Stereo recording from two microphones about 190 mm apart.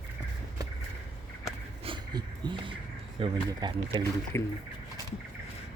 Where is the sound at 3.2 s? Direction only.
25° right (ahead or behind).